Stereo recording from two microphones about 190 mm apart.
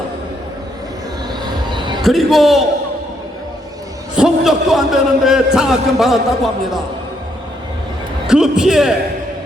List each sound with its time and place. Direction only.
1.3 s music: 25° right (ahead or behind)
2.0 s a man's voice: centre (ahead or behind)
4.1 s a man's voice: 5° right (ahead or behind)
8.3 s a man's voice: 5° right (ahead or behind)